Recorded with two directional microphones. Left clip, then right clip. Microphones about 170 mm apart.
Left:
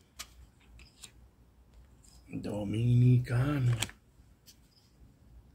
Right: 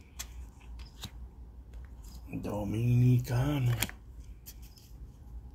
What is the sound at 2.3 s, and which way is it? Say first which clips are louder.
Speech: even; 20° left (ahead or behind).